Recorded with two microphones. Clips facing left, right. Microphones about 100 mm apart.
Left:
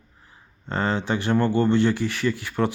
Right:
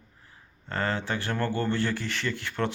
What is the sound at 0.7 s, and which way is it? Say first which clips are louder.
Speech: left 5 dB; 20° left (ahead or behind).